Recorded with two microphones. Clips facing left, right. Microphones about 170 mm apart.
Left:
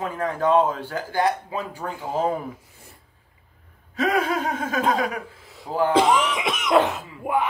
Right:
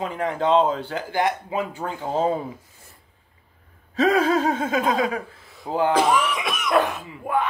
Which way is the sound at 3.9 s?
30° right (ahead or behind).